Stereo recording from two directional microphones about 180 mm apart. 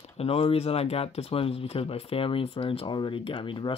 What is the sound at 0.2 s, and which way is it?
Speech, 35° left (ahead or behind).